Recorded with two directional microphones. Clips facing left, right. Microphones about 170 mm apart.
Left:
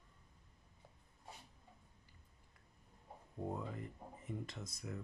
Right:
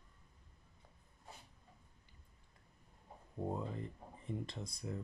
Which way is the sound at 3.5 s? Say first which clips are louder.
Right 3 dB; 30° right (ahead or behind).